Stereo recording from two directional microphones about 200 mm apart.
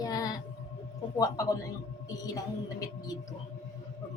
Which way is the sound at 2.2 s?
20° left (ahead or behind).